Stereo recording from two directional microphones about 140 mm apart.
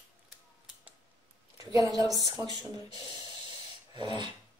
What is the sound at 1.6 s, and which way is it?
Speech, 25° right (ahead or behind).